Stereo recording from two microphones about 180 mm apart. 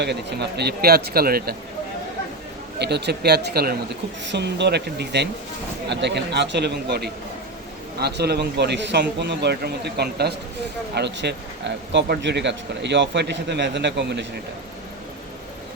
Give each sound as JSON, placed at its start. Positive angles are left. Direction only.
{"t": 0.0, "sound": "speech", "side_deg": -70}
{"t": 2.7, "sound": "speech", "side_deg": -70}
{"t": 4.3, "sound": "a man's voice", "side_deg": -70}